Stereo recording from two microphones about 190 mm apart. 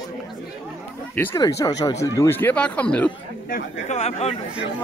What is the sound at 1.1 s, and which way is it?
Speech, 10° left (ahead or behind).